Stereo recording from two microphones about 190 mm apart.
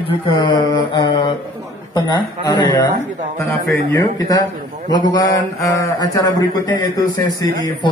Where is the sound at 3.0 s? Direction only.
40° right (ahead or behind).